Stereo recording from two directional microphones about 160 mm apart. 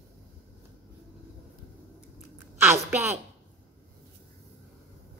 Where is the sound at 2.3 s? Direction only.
15° right (ahead or behind).